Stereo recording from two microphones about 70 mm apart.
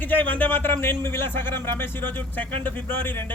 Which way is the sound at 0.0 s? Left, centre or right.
Left.